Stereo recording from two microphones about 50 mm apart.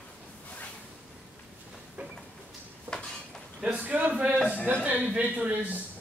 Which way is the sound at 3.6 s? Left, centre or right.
Centre.